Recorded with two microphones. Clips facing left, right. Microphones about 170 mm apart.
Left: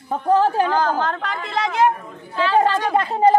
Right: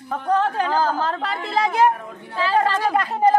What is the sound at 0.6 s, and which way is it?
A woman's voice, 5° right (ahead or behind).